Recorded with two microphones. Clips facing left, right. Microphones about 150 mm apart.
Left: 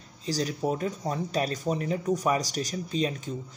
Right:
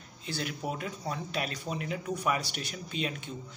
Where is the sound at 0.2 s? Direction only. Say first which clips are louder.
Left 7 dB; 35° left (ahead or behind).